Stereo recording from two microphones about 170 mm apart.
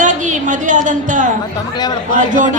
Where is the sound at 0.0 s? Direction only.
50° right (ahead or behind).